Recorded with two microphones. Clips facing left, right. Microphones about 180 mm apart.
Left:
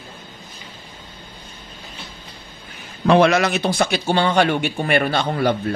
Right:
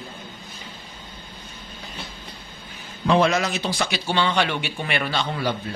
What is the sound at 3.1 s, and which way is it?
Speech, 70° left (ahead or behind).